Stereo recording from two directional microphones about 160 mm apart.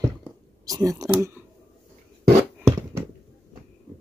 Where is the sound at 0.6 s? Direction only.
20° right (ahead or behind).